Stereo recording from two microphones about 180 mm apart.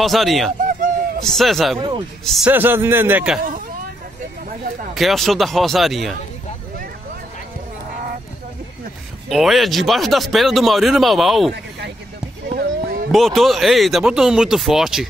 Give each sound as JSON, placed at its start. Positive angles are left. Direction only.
{"t": 0.0, "sound": "speech", "side_deg": 0}
{"t": 0.7, "sound": "a sound", "side_deg": -50}
{"t": 1.2, "sound": "speech", "side_deg": 0}
{"t": 2.5, "sound": "a man's voice", "side_deg": -10}
{"t": 4.9, "sound": "speech", "side_deg": 0}
{"t": 9.3, "sound": "speech", "side_deg": 0}
{"t": 12.5, "sound": "a sound", "side_deg": -50}
{"t": 13.1, "sound": "speech", "side_deg": 0}